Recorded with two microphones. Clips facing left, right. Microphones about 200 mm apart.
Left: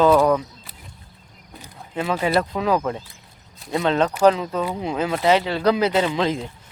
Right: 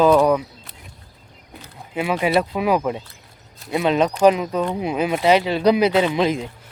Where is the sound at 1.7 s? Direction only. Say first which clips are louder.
Right 2 dB; 10° right (ahead or behind).